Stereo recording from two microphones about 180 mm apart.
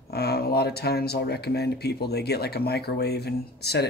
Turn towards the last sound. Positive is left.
turn(degrees=65)  # may be behind; listen again after turning